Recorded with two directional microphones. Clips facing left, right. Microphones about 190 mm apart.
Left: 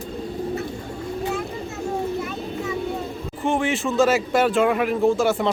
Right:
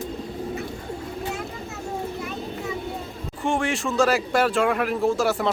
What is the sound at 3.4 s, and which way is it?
Speech, centre (ahead or behind).